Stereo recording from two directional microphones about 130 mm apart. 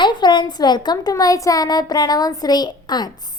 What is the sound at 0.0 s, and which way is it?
A woman's voice, 35° left (ahead or behind).